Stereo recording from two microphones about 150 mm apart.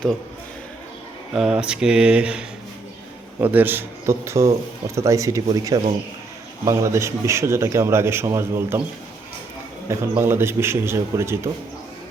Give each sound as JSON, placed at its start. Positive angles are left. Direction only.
{"t": 1.3, "sound": "a man's voice", "side_deg": -5}
{"t": 9.9, "sound": "a man's voice", "side_deg": -15}